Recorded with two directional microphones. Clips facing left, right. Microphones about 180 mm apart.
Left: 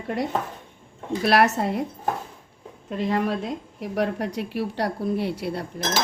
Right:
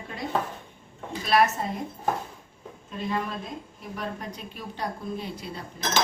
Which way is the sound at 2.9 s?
70° left (ahead or behind).